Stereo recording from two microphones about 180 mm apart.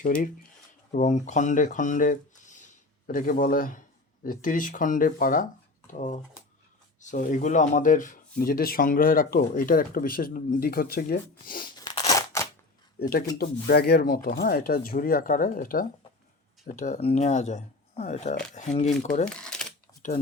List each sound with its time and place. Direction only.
0.0 s speech: 50° left (ahead or behind)
11.8 s scissors: 20° left (ahead or behind)
13.0 s speech: 55° left (ahead or behind); by 18.9 s 40° left (ahead or behind)
19.2 s speech: 5° left (ahead or behind)
19.9 s typewriter: 15° left (ahead or behind)